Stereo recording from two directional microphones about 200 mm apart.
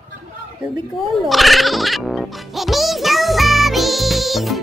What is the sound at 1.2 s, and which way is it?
Music, centre (ahead or behind).